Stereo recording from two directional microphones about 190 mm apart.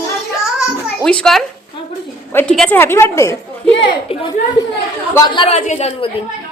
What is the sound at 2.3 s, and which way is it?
A woman's voice, 10° left (ahead or behind).